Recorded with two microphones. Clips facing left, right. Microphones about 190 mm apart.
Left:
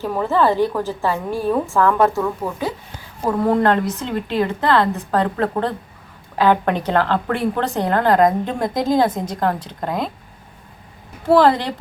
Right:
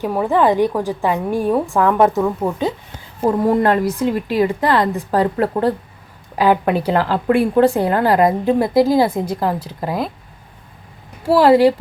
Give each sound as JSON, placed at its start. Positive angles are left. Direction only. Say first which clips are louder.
{"t": 0.0, "sound": "a woman's voice", "louder": "right 2 dB", "side_deg": -15}
{"t": 11.3, "sound": "a woman's voice", "louder": "right 4 dB", "side_deg": -5}